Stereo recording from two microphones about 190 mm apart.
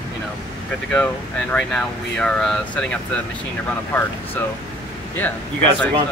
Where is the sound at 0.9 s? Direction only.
5° left (ahead or behind).